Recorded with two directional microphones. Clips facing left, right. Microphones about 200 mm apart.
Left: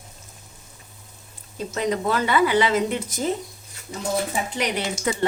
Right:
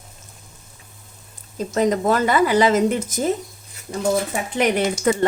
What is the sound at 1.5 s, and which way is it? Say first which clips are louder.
Speech: right 5 dB; 45° right (ahead or behind).